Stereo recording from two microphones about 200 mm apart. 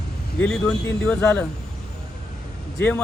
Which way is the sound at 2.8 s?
10° left (ahead or behind).